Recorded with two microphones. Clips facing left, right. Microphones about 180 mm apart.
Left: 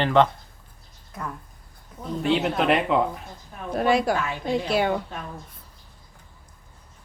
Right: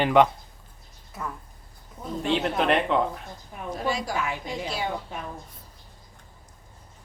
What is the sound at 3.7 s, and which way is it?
Speech, 60° left (ahead or behind).